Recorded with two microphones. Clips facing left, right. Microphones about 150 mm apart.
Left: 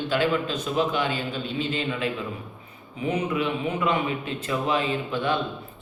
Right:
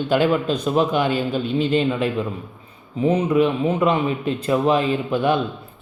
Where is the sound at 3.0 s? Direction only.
35° right (ahead or behind).